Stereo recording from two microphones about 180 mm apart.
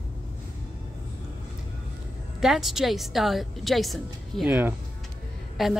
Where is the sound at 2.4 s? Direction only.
Centre (ahead or behind).